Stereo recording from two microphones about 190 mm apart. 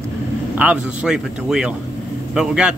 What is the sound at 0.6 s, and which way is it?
Speech, 5° right (ahead or behind).